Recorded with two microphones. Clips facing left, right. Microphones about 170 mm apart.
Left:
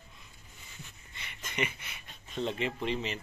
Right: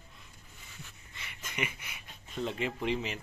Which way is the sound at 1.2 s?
5° right (ahead or behind).